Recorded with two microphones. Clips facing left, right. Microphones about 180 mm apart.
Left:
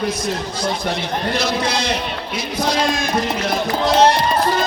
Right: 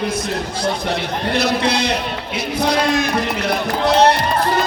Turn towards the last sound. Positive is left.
turn(degrees=-65)  # may be behind; listen again after turning